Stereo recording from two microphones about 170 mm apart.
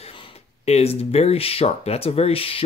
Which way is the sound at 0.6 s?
35° left (ahead or behind).